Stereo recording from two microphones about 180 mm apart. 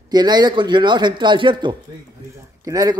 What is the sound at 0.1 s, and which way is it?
A man's voice, 20° right (ahead or behind).